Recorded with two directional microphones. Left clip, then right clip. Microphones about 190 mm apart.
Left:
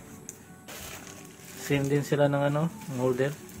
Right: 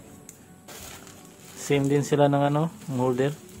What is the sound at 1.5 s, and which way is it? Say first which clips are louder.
Speech: right 4 dB; 45° right (ahead or behind).